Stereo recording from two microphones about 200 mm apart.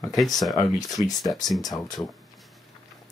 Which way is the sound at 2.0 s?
15° left (ahead or behind).